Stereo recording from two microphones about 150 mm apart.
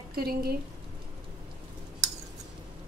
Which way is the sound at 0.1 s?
90° right.